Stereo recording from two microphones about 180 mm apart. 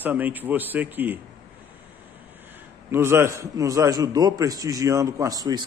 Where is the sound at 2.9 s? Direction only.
15° right (ahead or behind).